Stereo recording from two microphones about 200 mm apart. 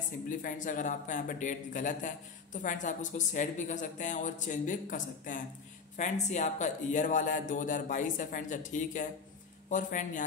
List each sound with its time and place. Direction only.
0.3 s speech: 40° left (ahead or behind)